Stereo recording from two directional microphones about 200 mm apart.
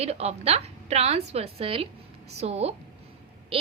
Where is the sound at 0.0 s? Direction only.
30° right (ahead or behind).